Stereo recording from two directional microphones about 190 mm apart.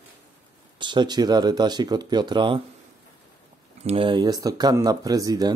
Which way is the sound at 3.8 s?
25° right (ahead or behind).